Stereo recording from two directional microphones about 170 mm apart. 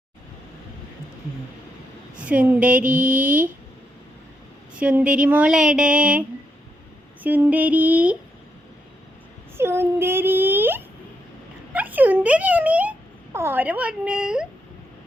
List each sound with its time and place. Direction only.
2.1 s speech: 5° right (ahead or behind)
2.9 s mantra: 50° right (ahead or behind)
3.2 s speech: 10° right (ahead or behind)
4.7 s speech: 5° right (ahead or behind)
9.6 s speech: 15° right (ahead or behind)